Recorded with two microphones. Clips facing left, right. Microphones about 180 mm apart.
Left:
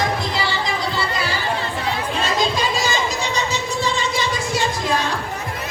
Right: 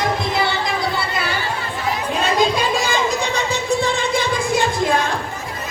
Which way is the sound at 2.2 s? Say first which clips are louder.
Right 4 dB; 55° right (ahead or behind).